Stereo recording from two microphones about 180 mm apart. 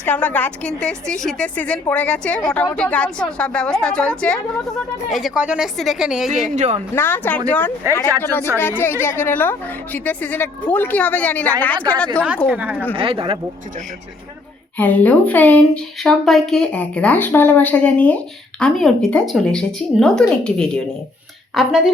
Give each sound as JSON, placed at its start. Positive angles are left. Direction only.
{"t": 0.0, "sound": "a woman's voice", "side_deg": 10}
{"t": 6.6, "sound": "speech", "side_deg": -40}
{"t": 6.9, "sound": "a woman's voice", "side_deg": 10}
{"t": 12.5, "sound": "a woman's voice", "side_deg": -10}
{"t": 13.0, "sound": "speech", "side_deg": -30}
{"t": 14.8, "sound": "a woman's voice", "side_deg": 10}